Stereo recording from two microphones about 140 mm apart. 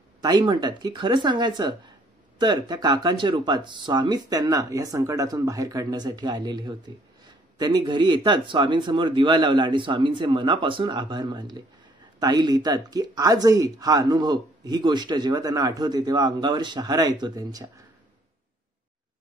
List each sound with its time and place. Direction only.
0.2 s speech: 35° right (ahead or behind)